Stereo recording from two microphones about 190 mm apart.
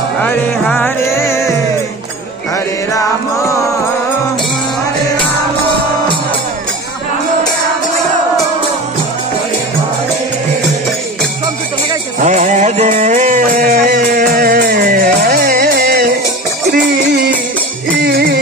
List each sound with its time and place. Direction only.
0.2 s music: 10° left (ahead or behind)
12.2 s music: 40° right (ahead or behind); by 18.4 s 60° right (ahead or behind)